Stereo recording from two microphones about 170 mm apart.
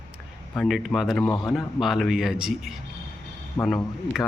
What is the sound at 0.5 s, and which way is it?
Speech, centre (ahead or behind).